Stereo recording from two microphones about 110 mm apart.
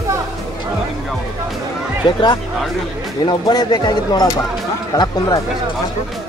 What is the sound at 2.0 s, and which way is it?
Speech, 40° left (ahead or behind).